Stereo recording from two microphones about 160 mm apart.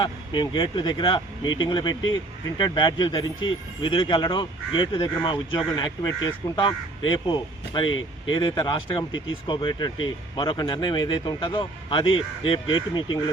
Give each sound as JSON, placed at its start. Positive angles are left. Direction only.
{"t": 0.0, "sound": "speech", "side_deg": 30}